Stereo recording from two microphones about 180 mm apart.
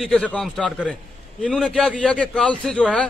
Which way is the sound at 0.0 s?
5° left (ahead or behind).